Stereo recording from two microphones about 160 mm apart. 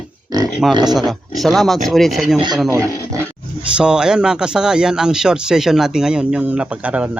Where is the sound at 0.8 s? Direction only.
Centre (ahead or behind).